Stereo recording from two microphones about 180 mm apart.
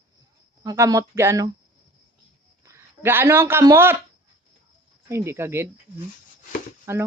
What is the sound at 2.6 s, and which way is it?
Speech, 15° right (ahead or behind).